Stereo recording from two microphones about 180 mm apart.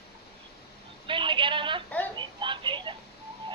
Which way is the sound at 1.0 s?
25° right (ahead or behind).